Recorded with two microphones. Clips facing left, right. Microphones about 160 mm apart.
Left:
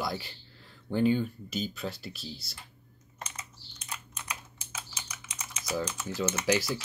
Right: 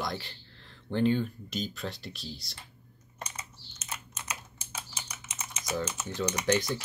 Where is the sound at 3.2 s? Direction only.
25° right (ahead or behind).